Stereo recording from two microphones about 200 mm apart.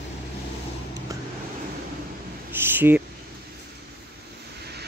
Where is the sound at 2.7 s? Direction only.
10° right (ahead or behind).